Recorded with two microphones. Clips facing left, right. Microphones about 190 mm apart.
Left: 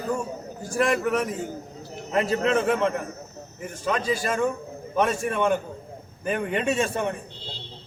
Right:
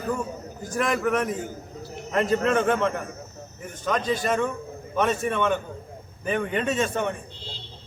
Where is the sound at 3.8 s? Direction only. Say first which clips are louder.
Right 1 dB; 10° left (ahead or behind).